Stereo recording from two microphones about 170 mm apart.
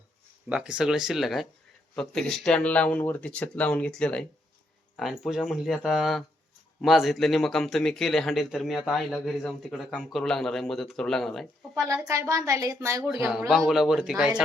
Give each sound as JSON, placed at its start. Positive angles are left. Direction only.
{"t": 0.4, "sound": "a man's voice", "side_deg": -5}
{"t": 11.7, "sound": "a woman's voice", "side_deg": -15}
{"t": 13.5, "sound": "a man's voice", "side_deg": 0}